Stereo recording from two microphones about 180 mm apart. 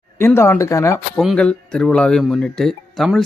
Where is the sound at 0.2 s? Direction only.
15° left (ahead or behind).